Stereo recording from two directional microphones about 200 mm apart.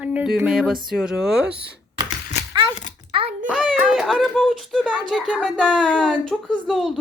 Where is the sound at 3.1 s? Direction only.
30° right (ahead or behind).